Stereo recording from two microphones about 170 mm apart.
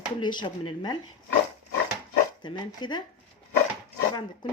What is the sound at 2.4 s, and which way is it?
Speech, 25° left (ahead or behind).